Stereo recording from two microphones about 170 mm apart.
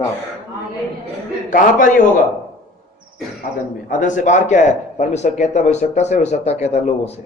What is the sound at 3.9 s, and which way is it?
A man's voice, 50° left (ahead or behind).